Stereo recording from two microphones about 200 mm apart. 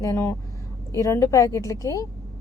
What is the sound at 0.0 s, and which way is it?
Speech, 15° left (ahead or behind).